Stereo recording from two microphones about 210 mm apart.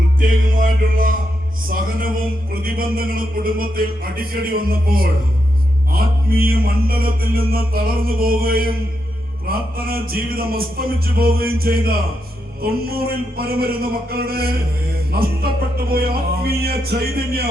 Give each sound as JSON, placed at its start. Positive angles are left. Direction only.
{"t": 0.2, "sound": "music", "side_deg": -40}